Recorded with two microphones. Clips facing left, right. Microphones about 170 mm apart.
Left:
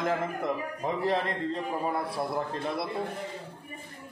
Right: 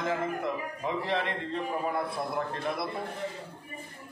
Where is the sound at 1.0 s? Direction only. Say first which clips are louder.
Left 3 dB; 40° left (ahead or behind).